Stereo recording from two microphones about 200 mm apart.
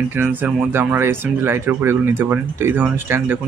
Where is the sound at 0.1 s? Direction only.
10° right (ahead or behind).